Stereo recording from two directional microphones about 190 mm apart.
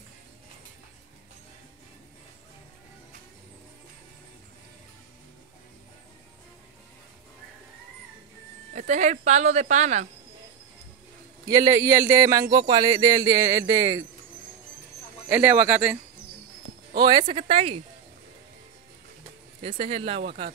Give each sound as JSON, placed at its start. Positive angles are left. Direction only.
{"t": 8.7, "sound": "speech", "side_deg": -40}
{"t": 11.4, "sound": "speech", "side_deg": -20}
{"t": 15.2, "sound": "speech", "side_deg": -10}
{"t": 17.2, "sound": "speech", "side_deg": -30}
{"t": 19.6, "sound": "speech", "side_deg": -30}